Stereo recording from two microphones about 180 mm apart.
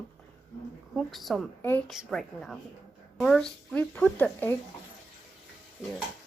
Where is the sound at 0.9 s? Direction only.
Centre (ahead or behind).